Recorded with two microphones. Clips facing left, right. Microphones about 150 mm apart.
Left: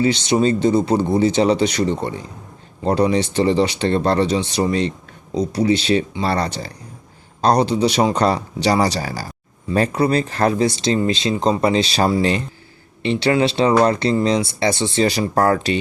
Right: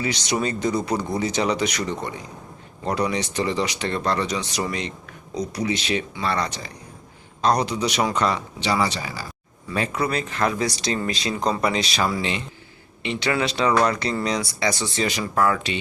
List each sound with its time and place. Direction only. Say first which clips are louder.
0.0 s a man's voice: left 8 dB; 25° left (ahead or behind)